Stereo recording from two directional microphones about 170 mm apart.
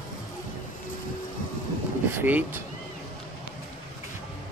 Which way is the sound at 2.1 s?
10° right (ahead or behind).